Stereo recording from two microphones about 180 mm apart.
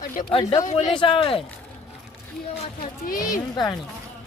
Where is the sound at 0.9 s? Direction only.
25° left (ahead or behind).